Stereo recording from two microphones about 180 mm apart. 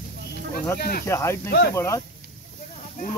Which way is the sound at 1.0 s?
15° left (ahead or behind).